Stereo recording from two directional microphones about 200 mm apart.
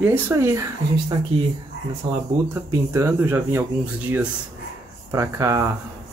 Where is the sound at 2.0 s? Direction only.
25° right (ahead or behind).